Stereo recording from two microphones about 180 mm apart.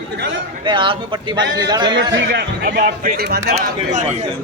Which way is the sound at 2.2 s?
65° right (ahead or behind).